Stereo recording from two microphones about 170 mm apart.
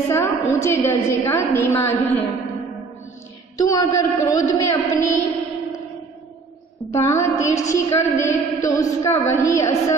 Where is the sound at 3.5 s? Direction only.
20° left (ahead or behind).